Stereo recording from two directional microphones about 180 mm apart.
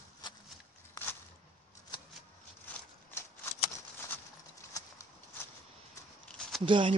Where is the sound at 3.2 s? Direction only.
15° left (ahead or behind).